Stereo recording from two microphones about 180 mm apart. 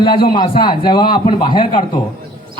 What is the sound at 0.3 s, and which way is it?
Speech, 25° left (ahead or behind).